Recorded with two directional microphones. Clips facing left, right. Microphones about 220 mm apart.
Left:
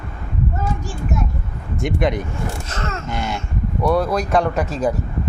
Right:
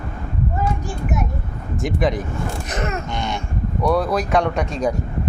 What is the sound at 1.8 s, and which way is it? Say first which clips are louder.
Speech: left 1 dB; centre (ahead or behind).